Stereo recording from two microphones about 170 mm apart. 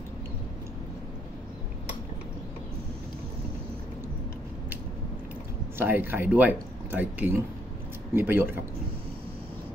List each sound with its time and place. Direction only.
5.8 s speech: 10° right (ahead or behind)